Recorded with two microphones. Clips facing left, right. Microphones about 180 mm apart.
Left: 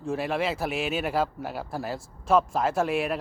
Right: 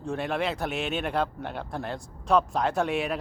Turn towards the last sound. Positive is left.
turn(degrees=0)  # may be behind; listen again after turning